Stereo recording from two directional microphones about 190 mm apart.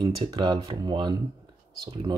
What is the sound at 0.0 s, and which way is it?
Speech, 25° right (ahead or behind).